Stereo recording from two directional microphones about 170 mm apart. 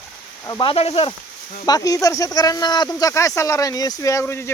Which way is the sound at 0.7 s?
35° left (ahead or behind).